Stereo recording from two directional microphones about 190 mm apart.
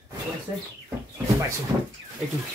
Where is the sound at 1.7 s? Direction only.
15° right (ahead or behind).